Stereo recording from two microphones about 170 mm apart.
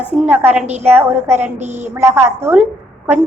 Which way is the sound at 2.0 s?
15° right (ahead or behind).